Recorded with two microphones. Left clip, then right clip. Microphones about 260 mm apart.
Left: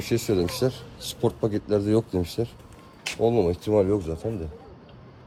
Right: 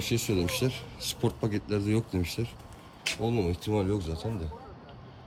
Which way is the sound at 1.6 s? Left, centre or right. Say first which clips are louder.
Left 9 dB; centre.